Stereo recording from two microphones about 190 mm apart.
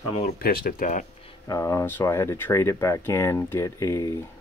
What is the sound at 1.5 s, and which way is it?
Speech, 15° left (ahead or behind).